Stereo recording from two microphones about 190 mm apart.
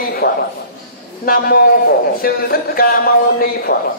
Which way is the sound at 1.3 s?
55° left (ahead or behind).